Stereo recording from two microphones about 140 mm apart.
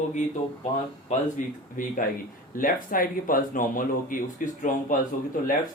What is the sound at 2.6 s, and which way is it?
Speech, 85° left.